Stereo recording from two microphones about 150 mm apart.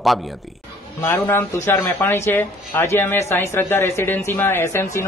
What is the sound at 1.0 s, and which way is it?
Speech, 15° left (ahead or behind).